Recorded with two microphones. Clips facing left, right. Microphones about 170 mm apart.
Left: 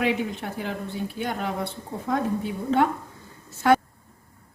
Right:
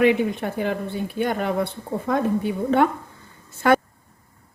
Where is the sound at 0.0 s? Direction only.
60° right (ahead or behind).